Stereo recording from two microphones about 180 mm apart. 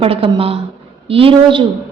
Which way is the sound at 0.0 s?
30° right (ahead or behind).